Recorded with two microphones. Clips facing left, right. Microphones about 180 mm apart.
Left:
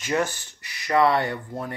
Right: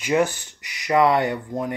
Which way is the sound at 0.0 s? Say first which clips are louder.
Right 5 dB; 15° right (ahead or behind).